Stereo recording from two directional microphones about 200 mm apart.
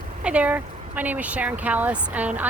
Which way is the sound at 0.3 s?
5° right (ahead or behind).